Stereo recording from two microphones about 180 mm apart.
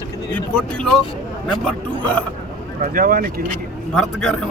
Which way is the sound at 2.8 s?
50° right (ahead or behind).